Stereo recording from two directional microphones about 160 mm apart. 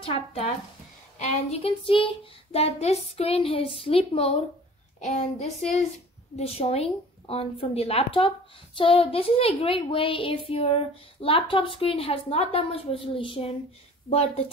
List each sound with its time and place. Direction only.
0.0 s speech: 40° left (ahead or behind)
1.1 s a woman's voice: 50° left (ahead or behind)